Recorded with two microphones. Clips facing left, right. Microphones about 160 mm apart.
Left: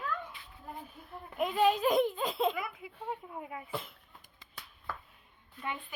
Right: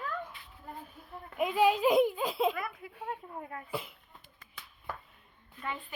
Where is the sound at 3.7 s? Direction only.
10° right (ahead or behind).